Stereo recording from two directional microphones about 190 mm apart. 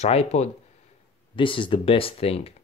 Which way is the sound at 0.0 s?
35° left (ahead or behind).